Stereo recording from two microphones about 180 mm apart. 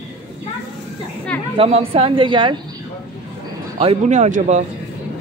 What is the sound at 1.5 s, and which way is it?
A woman's voice, 35° right (ahead or behind).